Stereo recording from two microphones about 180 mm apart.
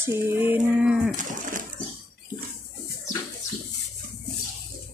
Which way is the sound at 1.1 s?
45° right (ahead or behind).